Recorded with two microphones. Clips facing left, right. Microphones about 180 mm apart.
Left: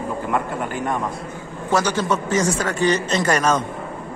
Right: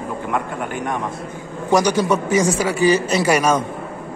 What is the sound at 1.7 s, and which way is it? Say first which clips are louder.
A man's voice: right 4 dB; 15° right (ahead or behind).